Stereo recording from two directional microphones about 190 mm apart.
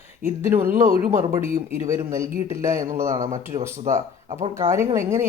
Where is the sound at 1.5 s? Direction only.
40° right (ahead or behind).